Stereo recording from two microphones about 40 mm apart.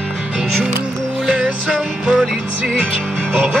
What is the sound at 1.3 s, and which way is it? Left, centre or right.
Music, right.